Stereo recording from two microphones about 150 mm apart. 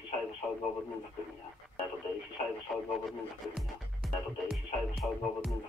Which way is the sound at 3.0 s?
Centre (ahead or behind).